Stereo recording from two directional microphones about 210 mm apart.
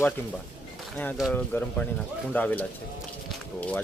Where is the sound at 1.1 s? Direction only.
5° left (ahead or behind).